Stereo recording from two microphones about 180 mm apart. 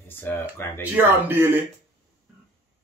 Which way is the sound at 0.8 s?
10° right (ahead or behind).